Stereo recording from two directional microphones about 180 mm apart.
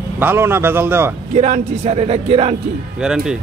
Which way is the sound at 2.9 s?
5° right (ahead or behind).